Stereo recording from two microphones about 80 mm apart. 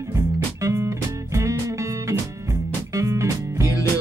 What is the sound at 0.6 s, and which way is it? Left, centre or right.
Music, right.